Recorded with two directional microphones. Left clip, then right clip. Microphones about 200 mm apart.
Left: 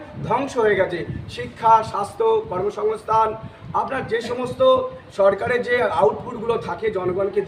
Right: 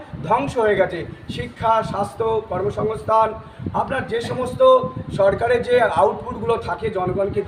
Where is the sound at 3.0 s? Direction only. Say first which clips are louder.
Right 3 dB; 10° left (ahead or behind).